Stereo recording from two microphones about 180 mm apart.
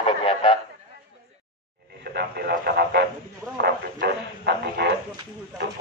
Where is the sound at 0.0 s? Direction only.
30° left (ahead or behind).